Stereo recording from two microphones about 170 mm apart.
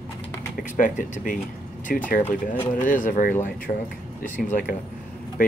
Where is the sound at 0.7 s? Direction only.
50° left (ahead or behind).